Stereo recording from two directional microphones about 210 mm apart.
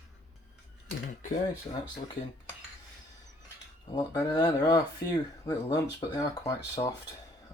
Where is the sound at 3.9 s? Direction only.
20° left (ahead or behind).